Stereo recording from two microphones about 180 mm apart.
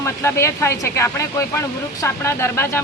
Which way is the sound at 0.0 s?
15° left (ahead or behind).